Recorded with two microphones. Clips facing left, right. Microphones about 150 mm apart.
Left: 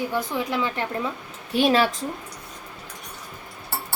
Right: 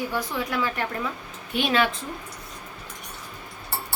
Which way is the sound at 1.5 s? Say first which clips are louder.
Left 4 dB; 35° left (ahead or behind).